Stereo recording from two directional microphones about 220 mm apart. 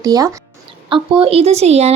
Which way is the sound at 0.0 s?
15° right (ahead or behind).